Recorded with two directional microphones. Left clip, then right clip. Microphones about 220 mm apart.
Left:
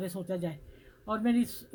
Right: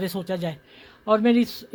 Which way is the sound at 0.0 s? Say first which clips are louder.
Right 7 dB; 45° right (ahead or behind).